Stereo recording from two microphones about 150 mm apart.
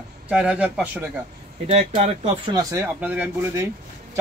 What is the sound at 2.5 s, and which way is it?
Speech, 20° right (ahead or behind).